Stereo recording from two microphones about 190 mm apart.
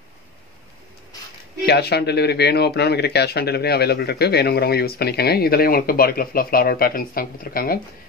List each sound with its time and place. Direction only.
1.7 s speech: 60° left (ahead or behind)